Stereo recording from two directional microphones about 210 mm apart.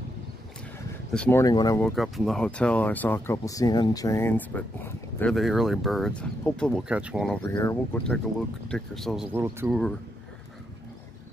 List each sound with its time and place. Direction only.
1.1 s speech: 5° left (ahead or behind)
1.4 s speech: 20° left (ahead or behind)
1.8 s speech: centre (ahead or behind)
7.5 s speech: 15° left (ahead or behind)
8.6 s speech: centre (ahead or behind)